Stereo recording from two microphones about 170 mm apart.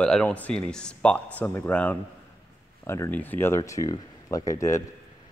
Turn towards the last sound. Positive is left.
turn(degrees=20)  # may be behind; listen again after turning